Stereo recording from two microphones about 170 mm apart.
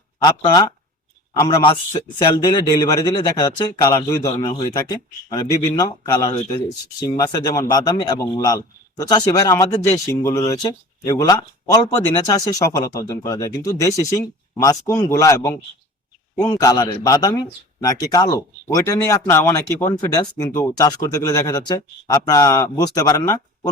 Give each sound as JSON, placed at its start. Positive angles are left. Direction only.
{"t": 0.3, "sound": "speech", "side_deg": 25}